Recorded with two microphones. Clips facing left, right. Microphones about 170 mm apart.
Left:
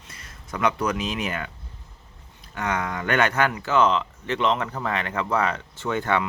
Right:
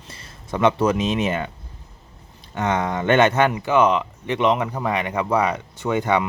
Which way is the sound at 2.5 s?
25° right (ahead or behind).